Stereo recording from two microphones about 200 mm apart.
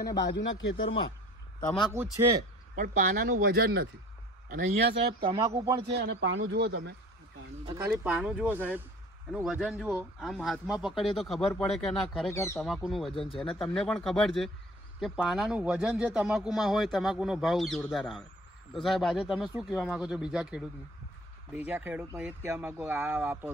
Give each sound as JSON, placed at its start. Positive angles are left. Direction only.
{"t": 0.0, "sound": "speech", "side_deg": 60}
{"t": 2.7, "sound": "speech", "side_deg": -35}
{"t": 4.5, "sound": "speech", "side_deg": -40}
{"t": 5.2, "sound": "speech", "side_deg": -20}
{"t": 5.9, "sound": "speech", "side_deg": -60}
{"t": 7.6, "sound": "speech", "side_deg": -15}
{"t": 12.3, "sound": "speech", "side_deg": 15}
{"t": 12.6, "sound": "speech", "side_deg": 0}